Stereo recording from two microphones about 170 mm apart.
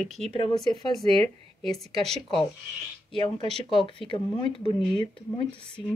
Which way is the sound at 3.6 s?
30° left (ahead or behind).